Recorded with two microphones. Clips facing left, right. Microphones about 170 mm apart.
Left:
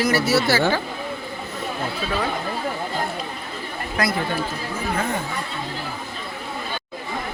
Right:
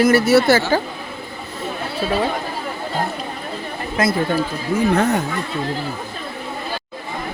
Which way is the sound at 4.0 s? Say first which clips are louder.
Right 5 dB; 20° right (ahead or behind).